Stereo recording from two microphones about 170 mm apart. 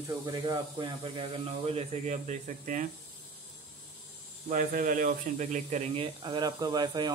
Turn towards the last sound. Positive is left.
turn(degrees=-25)  # may be behind; listen again after turning